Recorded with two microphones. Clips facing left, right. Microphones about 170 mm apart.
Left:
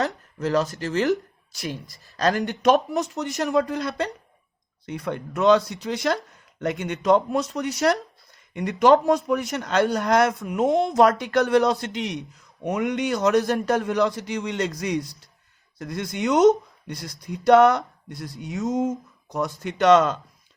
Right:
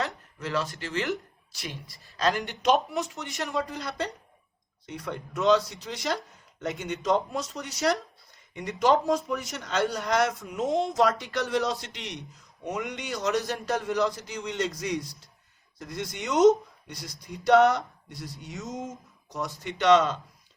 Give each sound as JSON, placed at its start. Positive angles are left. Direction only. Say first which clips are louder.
{"t": 0.0, "sound": "speech", "louder": "left 7 dB", "side_deg": 40}